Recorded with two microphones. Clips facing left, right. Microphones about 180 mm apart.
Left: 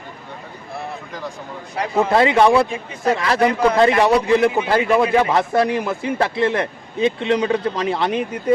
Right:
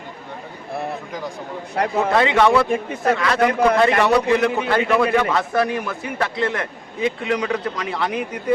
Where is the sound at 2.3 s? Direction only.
25° left (ahead or behind).